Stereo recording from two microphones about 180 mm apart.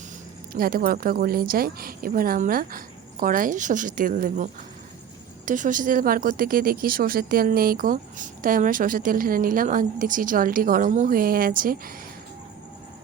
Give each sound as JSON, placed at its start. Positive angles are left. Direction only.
{"t": 0.5, "sound": "speech", "side_deg": -55}
{"t": 5.5, "sound": "speech", "side_deg": -45}